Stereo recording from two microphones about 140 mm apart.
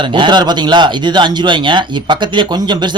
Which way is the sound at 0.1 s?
35° right (ahead or behind).